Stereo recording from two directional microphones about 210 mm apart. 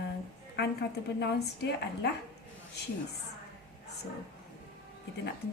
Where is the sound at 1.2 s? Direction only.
50° left (ahead or behind).